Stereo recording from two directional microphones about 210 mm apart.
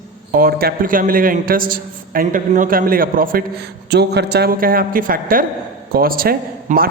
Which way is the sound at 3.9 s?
50° right (ahead or behind).